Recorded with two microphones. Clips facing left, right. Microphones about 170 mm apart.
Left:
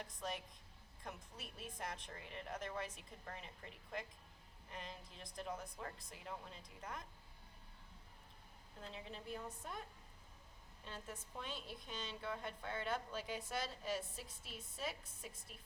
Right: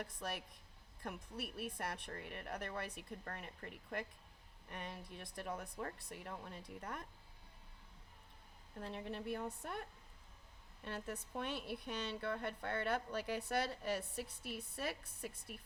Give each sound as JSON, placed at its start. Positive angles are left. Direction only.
{"t": 0.0, "sound": "a woman's voice", "side_deg": -65}
{"t": 8.9, "sound": "a woman's voice", "side_deg": -60}
{"t": 10.8, "sound": "a woman's voice", "side_deg": -65}